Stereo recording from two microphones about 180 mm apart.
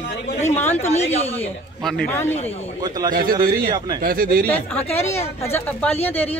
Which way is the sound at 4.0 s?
55° right (ahead or behind).